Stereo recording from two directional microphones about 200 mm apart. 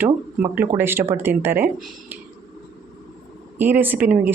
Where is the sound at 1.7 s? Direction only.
Centre (ahead or behind).